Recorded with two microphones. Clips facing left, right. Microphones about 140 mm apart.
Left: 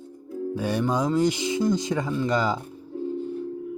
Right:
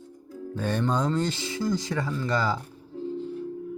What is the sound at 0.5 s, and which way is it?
Speech, 10° left (ahead or behind).